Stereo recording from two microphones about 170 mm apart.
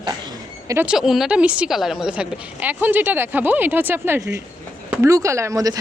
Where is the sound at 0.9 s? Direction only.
Centre (ahead or behind).